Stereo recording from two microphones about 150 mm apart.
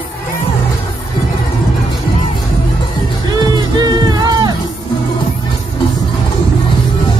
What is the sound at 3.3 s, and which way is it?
Music, 30° right (ahead or behind).